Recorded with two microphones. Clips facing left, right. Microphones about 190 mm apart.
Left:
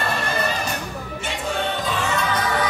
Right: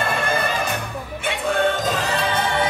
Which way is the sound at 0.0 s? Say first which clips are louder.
Right 2 dB; 50° right (ahead or behind).